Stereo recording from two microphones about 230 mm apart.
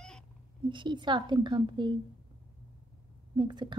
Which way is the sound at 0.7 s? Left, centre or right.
Centre.